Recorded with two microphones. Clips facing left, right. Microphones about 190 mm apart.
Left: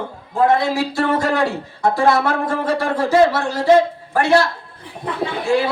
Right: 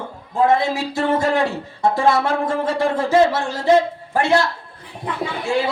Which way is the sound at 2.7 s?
25° right (ahead or behind).